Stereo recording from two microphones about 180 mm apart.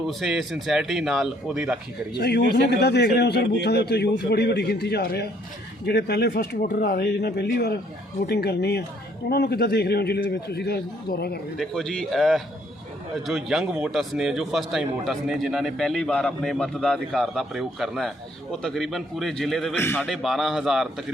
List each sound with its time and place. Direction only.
0.1 s a man's voice: centre (ahead or behind)
2.1 s a man's voice: 65° left (ahead or behind)
11.5 s a man's voice: centre (ahead or behind)
19.7 s a man's voice: 10° left (ahead or behind)
20.0 s a man's voice: centre (ahead or behind)